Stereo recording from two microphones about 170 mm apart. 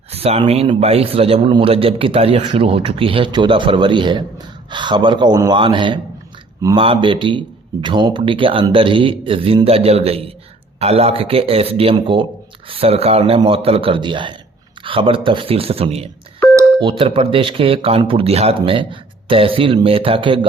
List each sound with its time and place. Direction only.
0.1 s a man's voice: 35° right (ahead or behind); by 6.8 s 20° right (ahead or behind)
6.8 s a man's voice: 30° right (ahead or behind)